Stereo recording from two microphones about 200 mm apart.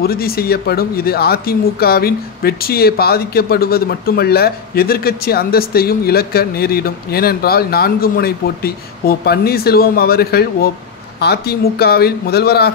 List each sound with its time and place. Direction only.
0.0 s speech: 50° left (ahead or behind)